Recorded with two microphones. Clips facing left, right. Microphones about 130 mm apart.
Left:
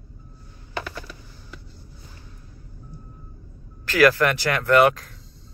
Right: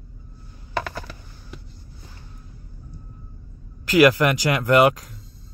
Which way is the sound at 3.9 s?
15° right (ahead or behind).